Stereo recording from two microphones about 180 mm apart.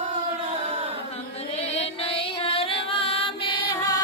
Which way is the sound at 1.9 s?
30° left (ahead or behind).